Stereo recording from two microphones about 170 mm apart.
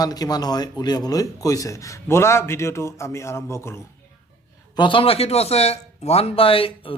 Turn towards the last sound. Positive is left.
turn(degrees=35)  # may be behind; listen again after turning